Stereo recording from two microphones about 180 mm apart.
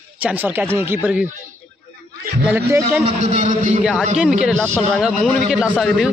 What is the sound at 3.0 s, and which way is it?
Speech, 40° right (ahead or behind).